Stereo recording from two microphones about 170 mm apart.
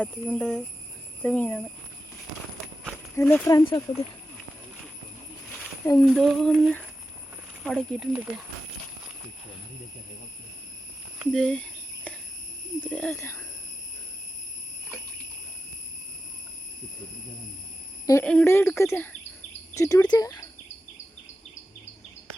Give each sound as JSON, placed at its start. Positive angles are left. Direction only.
{"t": 0.0, "sound": "speech", "side_deg": 5}
{"t": 3.2, "sound": "speech", "side_deg": 15}
{"t": 5.5, "sound": "a sound", "side_deg": 5}
{"t": 6.0, "sound": "speech", "side_deg": 0}
{"t": 11.2, "sound": "a sound", "side_deg": 0}
{"t": 12.8, "sound": "speech", "side_deg": 10}
{"t": 18.0, "sound": "speech", "side_deg": 20}